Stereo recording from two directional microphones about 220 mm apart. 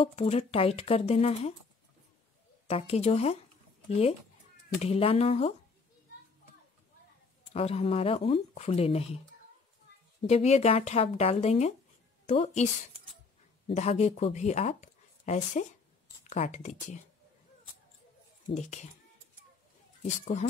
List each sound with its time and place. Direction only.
0.0 s speech: 25° left (ahead or behind)
2.7 s speech: 30° left (ahead or behind)
4.8 s speech: 25° left (ahead or behind)
7.5 s speech: 25° left (ahead or behind)
10.2 s speech: 30° left (ahead or behind)
13.7 s speech: 30° left (ahead or behind)
18.5 s speech: 30° left (ahead or behind)
20.0 s speech: 30° left (ahead or behind)